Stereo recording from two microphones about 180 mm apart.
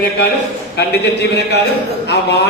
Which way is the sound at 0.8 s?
65° left (ahead or behind).